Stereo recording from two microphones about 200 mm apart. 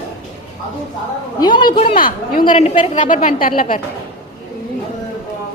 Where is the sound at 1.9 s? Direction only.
45° left (ahead or behind).